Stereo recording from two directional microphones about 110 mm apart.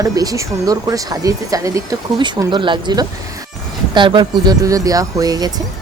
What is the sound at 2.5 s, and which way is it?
Speech, 45° right (ahead or behind).